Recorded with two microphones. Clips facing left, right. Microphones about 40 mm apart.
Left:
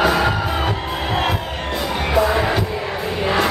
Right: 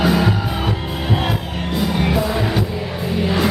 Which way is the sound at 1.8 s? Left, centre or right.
Centre.